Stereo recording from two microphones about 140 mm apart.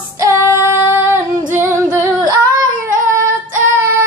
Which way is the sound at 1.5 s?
15° right (ahead or behind).